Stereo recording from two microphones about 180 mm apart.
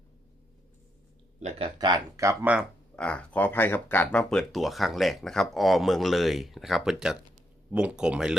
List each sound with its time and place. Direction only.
1.4 s speech: 35° right (ahead or behind); by 2.6 s 10° right (ahead or behind)
2.9 s speech: 5° left (ahead or behind)